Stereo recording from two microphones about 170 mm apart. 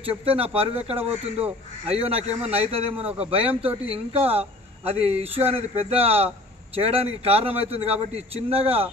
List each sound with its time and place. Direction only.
0.0 s a man's voice: 35° right (ahead or behind)